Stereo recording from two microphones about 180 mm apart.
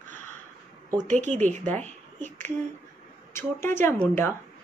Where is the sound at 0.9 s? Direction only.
40° right (ahead or behind).